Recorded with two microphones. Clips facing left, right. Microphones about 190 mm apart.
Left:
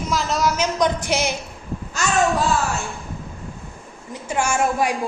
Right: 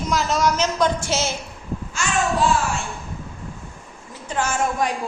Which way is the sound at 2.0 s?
40° left (ahead or behind).